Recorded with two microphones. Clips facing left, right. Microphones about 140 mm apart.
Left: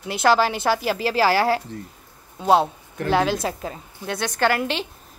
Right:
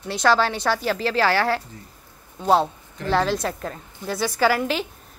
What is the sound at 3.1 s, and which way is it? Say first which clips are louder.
A woman's voice: left 1 dB; 5° left (ahead or behind).